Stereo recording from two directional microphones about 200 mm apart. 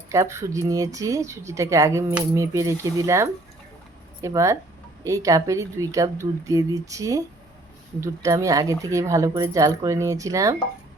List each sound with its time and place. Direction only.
0.1 s speech: 15° right (ahead or behind)